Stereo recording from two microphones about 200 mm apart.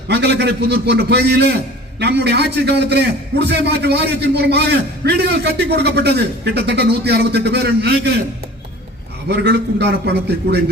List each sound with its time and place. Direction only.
0.1 s a man's voice: 55° right (ahead or behind)
9.3 s a man's voice: 55° right (ahead or behind)